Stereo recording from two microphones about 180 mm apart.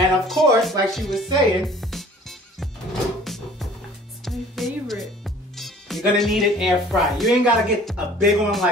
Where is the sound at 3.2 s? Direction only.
Centre (ahead or behind).